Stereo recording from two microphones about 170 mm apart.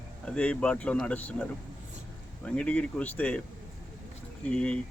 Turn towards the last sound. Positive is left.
turn(degrees=5)  # may be behind; listen again after turning